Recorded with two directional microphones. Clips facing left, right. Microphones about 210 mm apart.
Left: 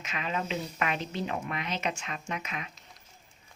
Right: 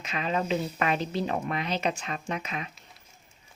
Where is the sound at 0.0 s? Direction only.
35° right (ahead or behind).